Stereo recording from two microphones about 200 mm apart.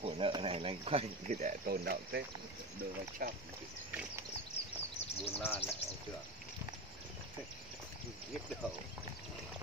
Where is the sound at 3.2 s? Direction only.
45° right (ahead or behind).